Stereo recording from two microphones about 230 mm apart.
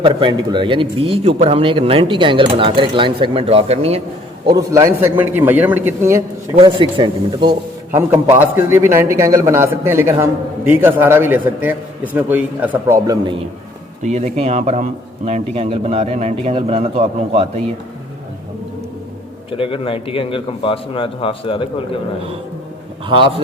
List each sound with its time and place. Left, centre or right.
0.0 s speech: right
4.4 s a man's voice: centre
6.6 s speech: right
7.9 s a man's voice: centre
14.0 s speech: right
19.5 s a man's voice: left
23.0 s speech: right